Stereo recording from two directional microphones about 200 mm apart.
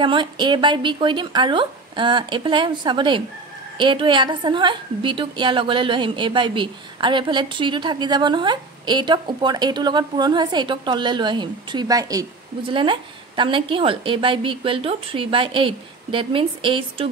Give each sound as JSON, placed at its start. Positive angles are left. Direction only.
{"t": 0.0, "sound": "a woman's voice", "side_deg": -25}